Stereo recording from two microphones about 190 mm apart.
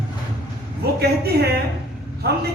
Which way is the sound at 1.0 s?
55° right (ahead or behind).